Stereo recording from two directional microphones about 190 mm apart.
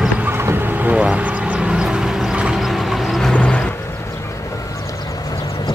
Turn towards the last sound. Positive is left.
turn(degrees=20)  # may be behind; listen again after turning